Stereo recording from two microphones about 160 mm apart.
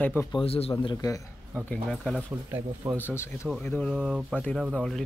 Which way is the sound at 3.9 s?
5° right (ahead or behind).